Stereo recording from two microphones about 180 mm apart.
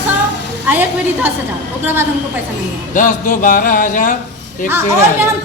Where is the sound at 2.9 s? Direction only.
50° left (ahead or behind).